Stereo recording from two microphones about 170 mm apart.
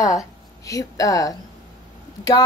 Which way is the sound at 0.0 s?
20° left (ahead or behind).